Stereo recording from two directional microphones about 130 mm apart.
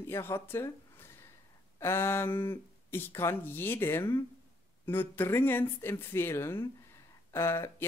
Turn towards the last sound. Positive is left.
turn(degrees=20)  # may be behind; listen again after turning